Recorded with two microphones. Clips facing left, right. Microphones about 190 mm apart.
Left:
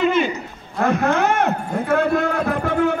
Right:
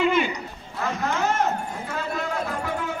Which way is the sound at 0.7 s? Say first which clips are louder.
Left 8 dB; 60° left (ahead or behind).